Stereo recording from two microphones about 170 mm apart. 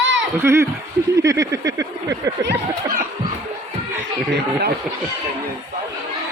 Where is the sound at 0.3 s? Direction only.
15° right (ahead or behind).